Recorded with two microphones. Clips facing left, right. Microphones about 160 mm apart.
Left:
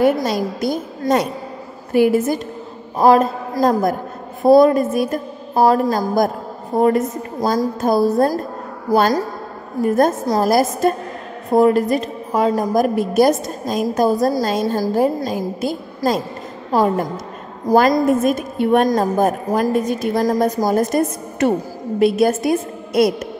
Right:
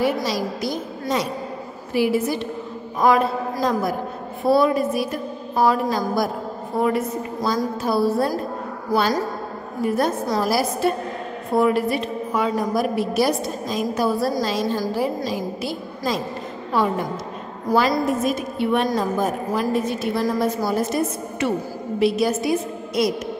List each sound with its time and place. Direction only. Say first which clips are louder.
0.0 s a woman's voice: left 5 dB; 50° left (ahead or behind)
9.8 s a woman's voice: left 5 dB; 45° left (ahead or behind)